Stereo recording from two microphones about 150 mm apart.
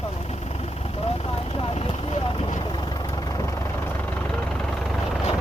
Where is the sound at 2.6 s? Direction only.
30° left (ahead or behind); by 5.2 s centre (ahead or behind).